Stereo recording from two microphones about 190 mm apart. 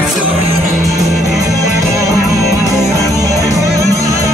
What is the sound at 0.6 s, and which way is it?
Music, 15° right (ahead or behind).